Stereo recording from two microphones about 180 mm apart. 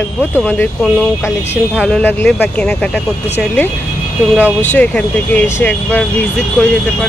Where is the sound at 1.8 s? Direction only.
5° left (ahead or behind).